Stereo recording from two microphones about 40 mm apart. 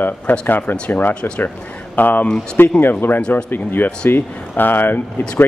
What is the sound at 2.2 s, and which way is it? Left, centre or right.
Speech, left.